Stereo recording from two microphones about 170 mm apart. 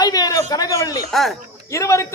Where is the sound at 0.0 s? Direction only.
20° left (ahead or behind).